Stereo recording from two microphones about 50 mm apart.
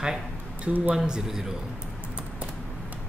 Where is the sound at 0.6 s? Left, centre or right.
Right.